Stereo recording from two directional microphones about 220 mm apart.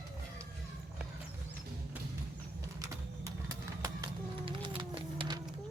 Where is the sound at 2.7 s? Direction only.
15° right (ahead or behind).